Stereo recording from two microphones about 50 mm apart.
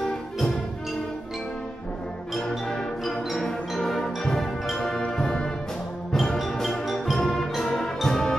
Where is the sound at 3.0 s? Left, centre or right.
Centre.